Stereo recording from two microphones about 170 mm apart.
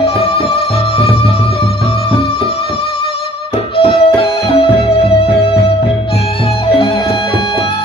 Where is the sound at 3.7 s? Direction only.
30° left (ahead or behind).